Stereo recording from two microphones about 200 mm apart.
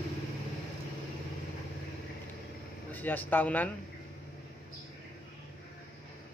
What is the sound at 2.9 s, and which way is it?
Speech, 10° left (ahead or behind).